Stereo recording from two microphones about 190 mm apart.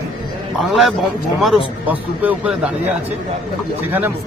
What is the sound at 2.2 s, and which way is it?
Speech, 5° right (ahead or behind).